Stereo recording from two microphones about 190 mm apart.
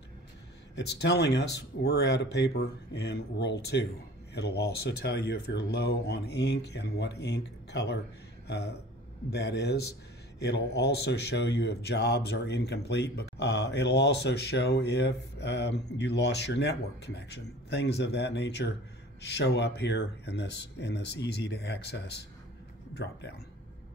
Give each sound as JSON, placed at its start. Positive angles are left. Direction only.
{"t": 0.7, "sound": "speech", "side_deg": 65}